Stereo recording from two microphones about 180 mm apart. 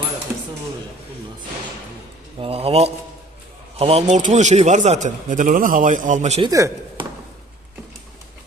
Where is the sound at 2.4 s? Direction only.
30° right (ahead or behind).